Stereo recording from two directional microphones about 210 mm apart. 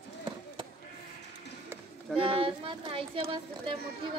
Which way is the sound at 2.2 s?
25° right (ahead or behind).